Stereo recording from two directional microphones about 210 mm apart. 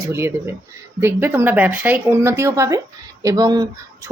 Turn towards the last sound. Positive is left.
turn(degrees=-15)  # may be behind; listen again after turning